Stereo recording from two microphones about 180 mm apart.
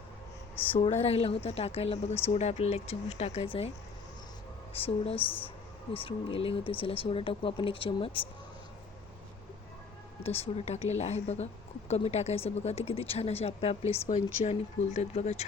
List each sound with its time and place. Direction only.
1.0 s speech: 35° left (ahead or behind)
4.7 s speech: 30° left (ahead or behind)
10.2 s speech: 35° left (ahead or behind)